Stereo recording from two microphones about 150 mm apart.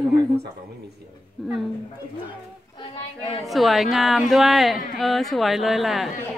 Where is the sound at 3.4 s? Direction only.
Centre (ahead or behind).